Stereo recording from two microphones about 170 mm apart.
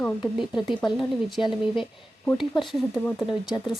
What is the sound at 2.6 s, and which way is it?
Speech, centre (ahead or behind).